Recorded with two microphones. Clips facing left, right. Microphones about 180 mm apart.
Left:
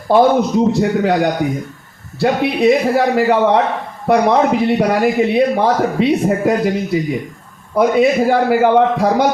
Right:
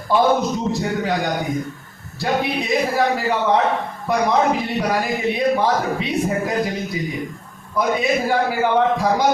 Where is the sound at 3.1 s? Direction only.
65° left (ahead or behind).